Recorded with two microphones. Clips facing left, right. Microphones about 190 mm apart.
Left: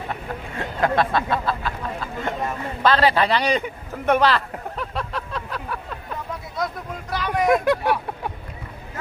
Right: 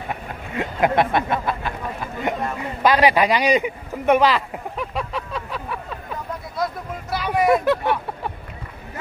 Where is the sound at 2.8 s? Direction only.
15° right (ahead or behind).